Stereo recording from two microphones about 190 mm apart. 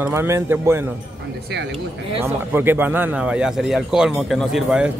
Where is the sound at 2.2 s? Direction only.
10° right (ahead or behind).